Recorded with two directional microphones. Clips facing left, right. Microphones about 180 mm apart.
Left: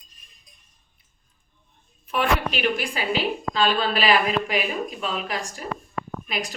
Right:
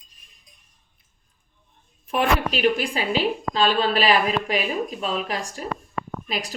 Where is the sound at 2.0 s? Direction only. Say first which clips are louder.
Right 2 dB; 35° right (ahead or behind).